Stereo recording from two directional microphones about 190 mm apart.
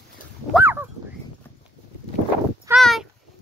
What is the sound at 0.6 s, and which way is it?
Dog, 10° right (ahead or behind).